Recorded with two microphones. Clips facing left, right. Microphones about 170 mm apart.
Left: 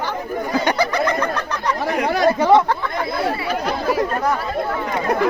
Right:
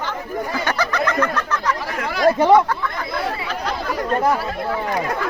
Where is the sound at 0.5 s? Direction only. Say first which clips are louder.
Left 5 dB; 15° left (ahead or behind).